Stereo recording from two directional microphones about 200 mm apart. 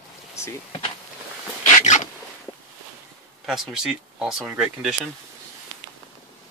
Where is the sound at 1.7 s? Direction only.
40° left (ahead or behind).